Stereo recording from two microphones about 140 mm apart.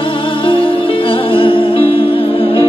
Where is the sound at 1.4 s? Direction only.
40° left (ahead or behind).